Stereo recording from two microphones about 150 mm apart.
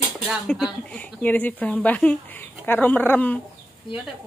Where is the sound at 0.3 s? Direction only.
5° right (ahead or behind).